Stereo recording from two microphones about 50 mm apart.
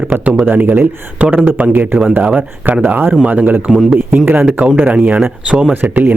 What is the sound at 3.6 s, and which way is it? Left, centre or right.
Speech, centre.